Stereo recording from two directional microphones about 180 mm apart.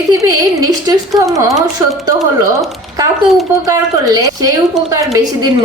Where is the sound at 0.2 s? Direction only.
20° right (ahead or behind).